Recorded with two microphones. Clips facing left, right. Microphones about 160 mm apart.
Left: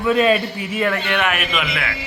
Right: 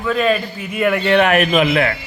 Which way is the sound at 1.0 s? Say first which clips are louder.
Right 8 dB; 35° right (ahead or behind).